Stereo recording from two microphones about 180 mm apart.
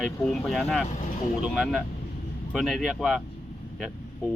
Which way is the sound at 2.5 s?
Centre (ahead or behind).